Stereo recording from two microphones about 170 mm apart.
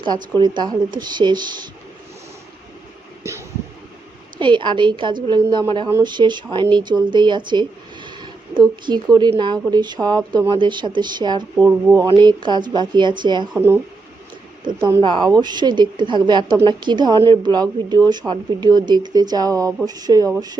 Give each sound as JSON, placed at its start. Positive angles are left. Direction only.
{"t": 0.3, "sound": "a woman's voice", "side_deg": -25}
{"t": 4.4, "sound": "a woman's voice", "side_deg": -30}
{"t": 11.6, "sound": "speech", "side_deg": -15}
{"t": 12.0, "sound": "a woman's voice", "side_deg": -25}
{"t": 13.5, "sound": "a woman's voice", "side_deg": -15}